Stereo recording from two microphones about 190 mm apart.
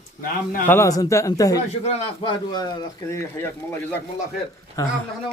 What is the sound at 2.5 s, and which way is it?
Speech, 20° left (ahead or behind).